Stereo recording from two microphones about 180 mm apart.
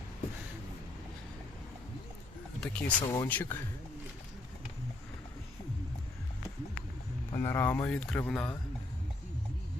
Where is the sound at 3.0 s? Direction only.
15° left (ahead or behind).